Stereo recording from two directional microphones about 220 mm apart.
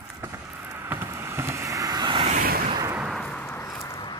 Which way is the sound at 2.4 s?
40° right (ahead or behind).